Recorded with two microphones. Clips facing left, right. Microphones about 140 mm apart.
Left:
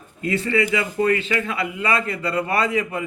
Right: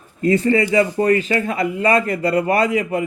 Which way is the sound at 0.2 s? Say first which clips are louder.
Right 6 dB; 40° right (ahead or behind).